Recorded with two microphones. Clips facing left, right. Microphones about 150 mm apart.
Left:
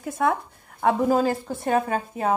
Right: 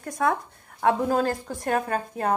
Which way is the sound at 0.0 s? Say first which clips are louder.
Left 1 dB; 5° left (ahead or behind).